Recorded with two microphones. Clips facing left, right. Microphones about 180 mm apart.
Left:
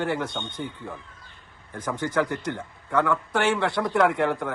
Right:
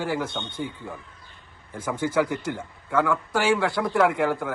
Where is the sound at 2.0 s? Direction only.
5° right (ahead or behind).